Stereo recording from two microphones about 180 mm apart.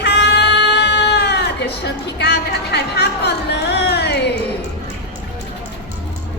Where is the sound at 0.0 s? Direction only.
70° left (ahead or behind).